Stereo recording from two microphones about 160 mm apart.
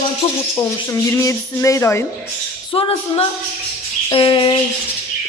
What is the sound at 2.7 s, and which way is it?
A man's voice, 35° left (ahead or behind).